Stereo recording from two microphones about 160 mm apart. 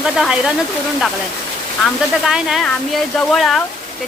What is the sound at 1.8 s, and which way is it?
Speech, centre (ahead or behind).